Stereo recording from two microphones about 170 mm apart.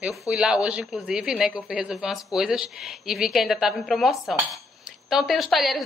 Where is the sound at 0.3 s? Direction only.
5° right (ahead or behind).